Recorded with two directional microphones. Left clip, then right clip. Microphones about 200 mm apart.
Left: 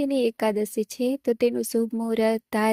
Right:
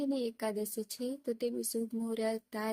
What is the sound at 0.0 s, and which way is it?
Speech, 35° left (ahead or behind).